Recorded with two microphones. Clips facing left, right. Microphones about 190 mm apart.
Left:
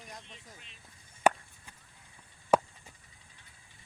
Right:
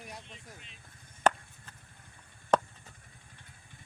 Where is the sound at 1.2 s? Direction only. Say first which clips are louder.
Left 1 dB; 10° left (ahead or behind).